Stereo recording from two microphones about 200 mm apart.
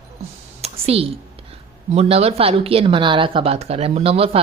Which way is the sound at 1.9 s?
30° right (ahead or behind).